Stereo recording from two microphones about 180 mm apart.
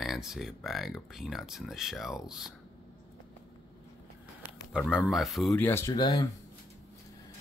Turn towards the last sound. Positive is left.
turn(degrees=25)  # may be behind; listen again after turning